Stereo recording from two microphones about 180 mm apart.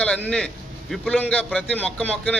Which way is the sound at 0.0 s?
5° left (ahead or behind).